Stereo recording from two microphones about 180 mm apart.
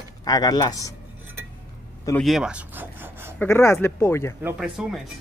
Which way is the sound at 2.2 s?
Centre (ahead or behind).